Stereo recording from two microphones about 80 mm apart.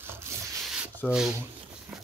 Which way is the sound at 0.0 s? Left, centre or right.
Right.